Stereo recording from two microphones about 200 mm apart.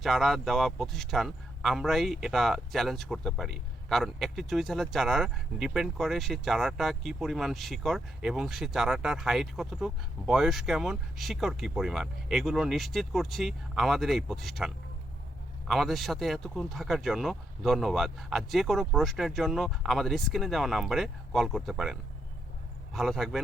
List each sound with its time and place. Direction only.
0.0 s speech: centre (ahead or behind)